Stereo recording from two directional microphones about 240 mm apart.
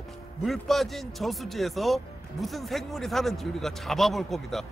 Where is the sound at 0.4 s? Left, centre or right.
Centre.